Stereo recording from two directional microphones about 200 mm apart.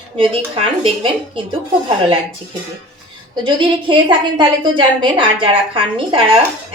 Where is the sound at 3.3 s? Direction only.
25° right (ahead or behind).